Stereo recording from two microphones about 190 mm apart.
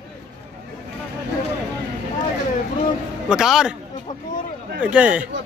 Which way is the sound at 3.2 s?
Centre (ahead or behind).